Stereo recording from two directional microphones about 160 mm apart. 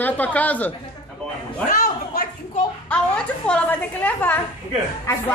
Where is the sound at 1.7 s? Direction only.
60° left (ahead or behind).